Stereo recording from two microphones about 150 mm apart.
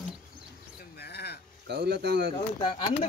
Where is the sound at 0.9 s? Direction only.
90° left.